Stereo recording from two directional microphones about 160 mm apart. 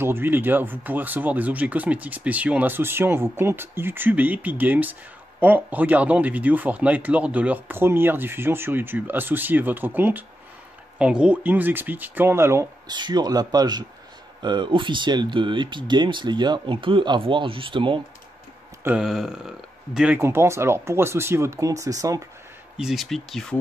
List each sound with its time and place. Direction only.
0.0 s speech: 15° right (ahead or behind)
12.9 s speech: 25° right (ahead or behind)
18.9 s speech: 5° right (ahead or behind)
20.2 s speech: 15° right (ahead or behind)
22.8 s speech: centre (ahead or behind)